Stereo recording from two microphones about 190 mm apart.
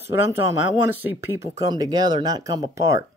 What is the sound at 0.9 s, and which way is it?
Speech, 10° right (ahead or behind).